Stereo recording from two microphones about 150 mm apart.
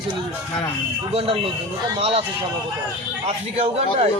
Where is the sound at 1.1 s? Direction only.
40° right (ahead or behind).